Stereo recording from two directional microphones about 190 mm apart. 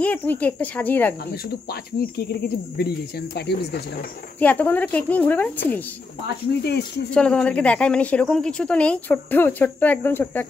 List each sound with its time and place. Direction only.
0.0 s a woman's voice: 10° left (ahead or behind)
1.7 s speech: 55° left (ahead or behind)
4.4 s a woman's voice: 10° left (ahead or behind)
7.2 s a woman's voice: 5° left (ahead or behind)